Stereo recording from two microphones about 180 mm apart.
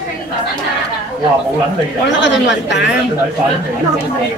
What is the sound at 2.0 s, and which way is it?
Speech, 85° left.